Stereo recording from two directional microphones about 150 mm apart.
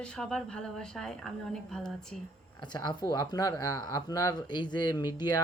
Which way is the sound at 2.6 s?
30° left (ahead or behind).